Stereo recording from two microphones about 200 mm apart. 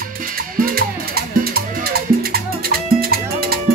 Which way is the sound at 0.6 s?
50° right (ahead or behind).